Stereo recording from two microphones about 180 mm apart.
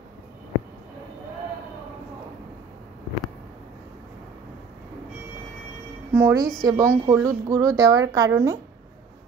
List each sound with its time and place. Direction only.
6.1 s a woman's voice: 15° right (ahead or behind)